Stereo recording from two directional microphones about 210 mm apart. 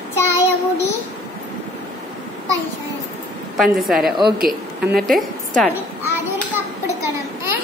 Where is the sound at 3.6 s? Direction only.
Centre (ahead or behind).